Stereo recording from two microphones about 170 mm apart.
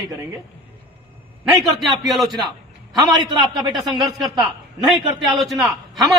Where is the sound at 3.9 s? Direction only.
Centre (ahead or behind).